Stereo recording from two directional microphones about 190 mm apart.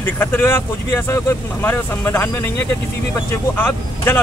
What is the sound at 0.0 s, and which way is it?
Speech, 10° left (ahead or behind).